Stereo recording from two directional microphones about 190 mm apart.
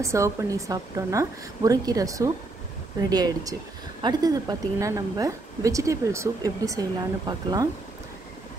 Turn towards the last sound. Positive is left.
turn(degrees=-20)  # may be behind; listen again after turning